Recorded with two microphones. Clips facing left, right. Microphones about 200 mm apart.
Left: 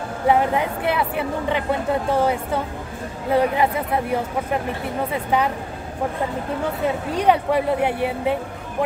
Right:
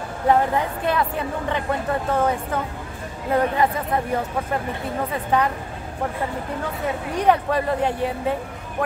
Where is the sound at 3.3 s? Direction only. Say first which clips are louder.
Left 1 dB; 10° left (ahead or behind).